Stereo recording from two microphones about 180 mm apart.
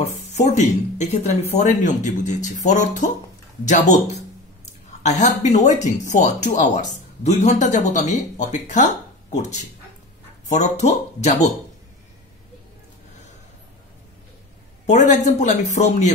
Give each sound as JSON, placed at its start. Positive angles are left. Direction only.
{"t": 0.0, "sound": "speech", "side_deg": 40}
{"t": 14.9, "sound": "speech", "side_deg": 40}